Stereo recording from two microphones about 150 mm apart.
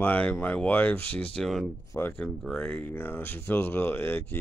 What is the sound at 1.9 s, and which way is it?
Speech, 15° left (ahead or behind).